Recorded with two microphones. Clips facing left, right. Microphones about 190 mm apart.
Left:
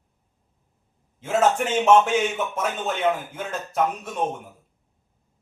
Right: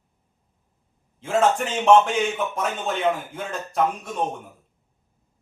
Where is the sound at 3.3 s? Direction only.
5° left (ahead or behind).